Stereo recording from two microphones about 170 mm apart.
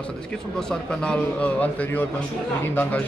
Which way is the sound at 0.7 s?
5° left (ahead or behind).